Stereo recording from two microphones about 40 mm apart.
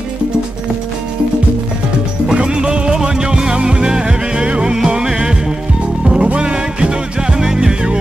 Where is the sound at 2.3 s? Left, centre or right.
Right.